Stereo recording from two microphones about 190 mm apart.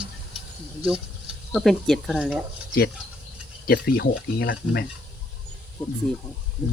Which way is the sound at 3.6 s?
55° left (ahead or behind).